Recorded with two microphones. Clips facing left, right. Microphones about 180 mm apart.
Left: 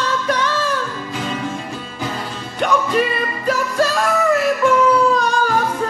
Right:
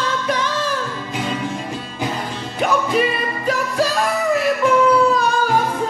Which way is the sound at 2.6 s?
Centre (ahead or behind).